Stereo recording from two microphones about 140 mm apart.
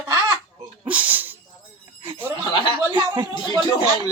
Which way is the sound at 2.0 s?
40° right (ahead or behind).